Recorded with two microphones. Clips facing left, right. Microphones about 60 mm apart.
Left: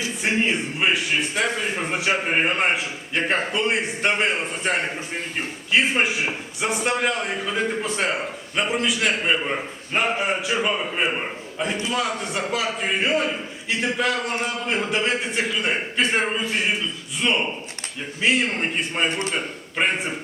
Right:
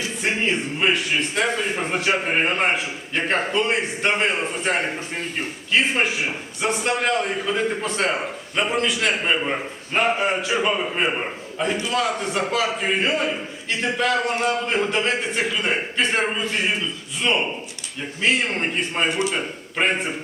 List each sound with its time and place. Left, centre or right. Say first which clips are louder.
0.2 s a man's voice: even; centre